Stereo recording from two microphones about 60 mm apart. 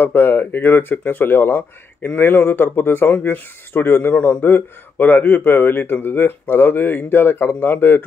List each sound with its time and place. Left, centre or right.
0.0 s speech: left